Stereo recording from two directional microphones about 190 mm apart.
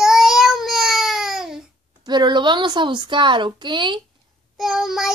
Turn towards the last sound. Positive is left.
turn(degrees=0)  # may be behind; listen again after turning